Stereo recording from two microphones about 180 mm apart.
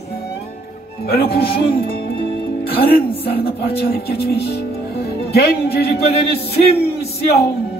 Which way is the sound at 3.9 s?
60° left (ahead or behind).